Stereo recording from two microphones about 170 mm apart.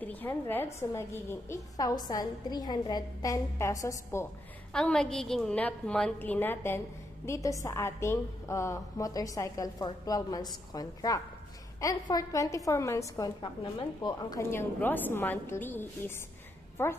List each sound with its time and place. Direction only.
0.0 s a woman's voice: 10° left (ahead or behind)
4.7 s a woman's voice: 5° left (ahead or behind)